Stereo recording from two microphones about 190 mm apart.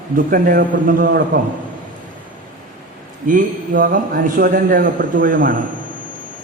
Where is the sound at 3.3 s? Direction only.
45° right (ahead or behind).